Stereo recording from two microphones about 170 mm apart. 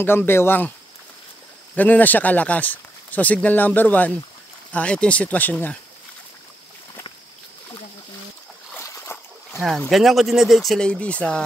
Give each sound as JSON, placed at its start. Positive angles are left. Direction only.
{"t": 0.0, "sound": "speech", "side_deg": 15}
{"t": 1.8, "sound": "speech", "side_deg": 10}
{"t": 8.7, "sound": "splash", "side_deg": 15}
{"t": 9.6, "sound": "speech", "side_deg": 0}